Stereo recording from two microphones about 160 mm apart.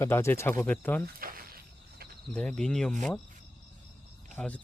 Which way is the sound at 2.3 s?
5° left (ahead or behind).